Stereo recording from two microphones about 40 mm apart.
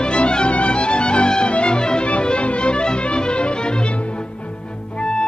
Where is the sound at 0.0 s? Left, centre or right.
Left.